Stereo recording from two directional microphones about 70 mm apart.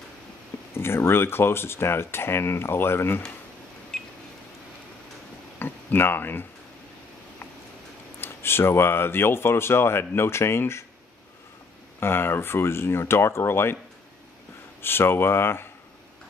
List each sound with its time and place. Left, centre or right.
0.7 s speech: left
3.9 s a sound: centre
5.6 s a sound: left
8.2 s speech: left
12.0 s speech: left
14.8 s speech: left